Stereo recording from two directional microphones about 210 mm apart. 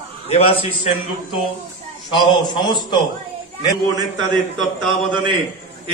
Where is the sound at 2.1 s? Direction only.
20° left (ahead or behind).